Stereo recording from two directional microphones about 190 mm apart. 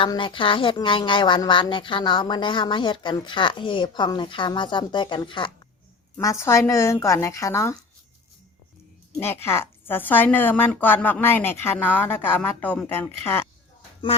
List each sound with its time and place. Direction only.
0.0 s a woman's voice: 25° left (ahead or behind)
9.2 s a woman's voice: 10° left (ahead or behind)